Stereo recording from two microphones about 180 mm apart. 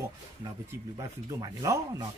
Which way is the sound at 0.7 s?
20° right (ahead or behind).